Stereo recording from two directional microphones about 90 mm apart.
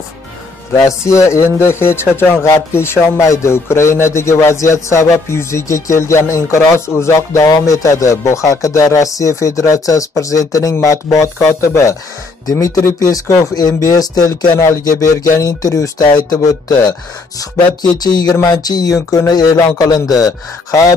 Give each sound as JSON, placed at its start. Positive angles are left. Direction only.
{"t": 0.7, "sound": "speech", "side_deg": 35}
{"t": 17.9, "sound": "speech", "side_deg": 50}